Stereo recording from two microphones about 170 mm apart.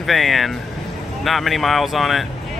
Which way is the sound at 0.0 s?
Centre (ahead or behind).